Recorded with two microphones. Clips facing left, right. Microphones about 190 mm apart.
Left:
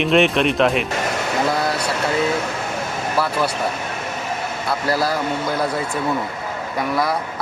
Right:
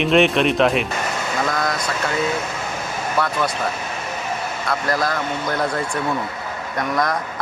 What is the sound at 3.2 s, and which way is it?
Speech, 5° left (ahead or behind).